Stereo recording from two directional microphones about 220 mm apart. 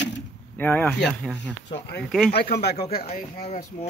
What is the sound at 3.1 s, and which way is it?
Speech, 30° left (ahead or behind).